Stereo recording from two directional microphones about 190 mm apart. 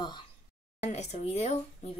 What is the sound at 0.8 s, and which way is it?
Speech, 35° left (ahead or behind).